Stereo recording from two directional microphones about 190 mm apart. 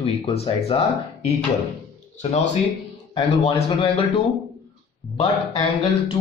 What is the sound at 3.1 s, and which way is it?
Speech, 25° left (ahead or behind).